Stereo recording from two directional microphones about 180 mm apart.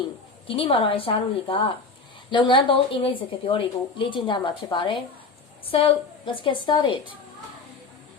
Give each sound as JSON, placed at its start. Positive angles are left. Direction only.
{"t": 0.4, "sound": "a woman's voice", "side_deg": 30}